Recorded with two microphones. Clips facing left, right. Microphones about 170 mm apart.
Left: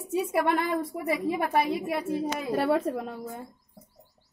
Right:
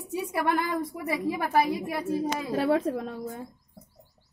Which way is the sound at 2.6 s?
5° left (ahead or behind).